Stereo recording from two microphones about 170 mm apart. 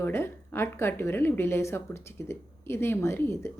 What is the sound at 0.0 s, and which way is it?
A woman's voice, 15° left (ahead or behind).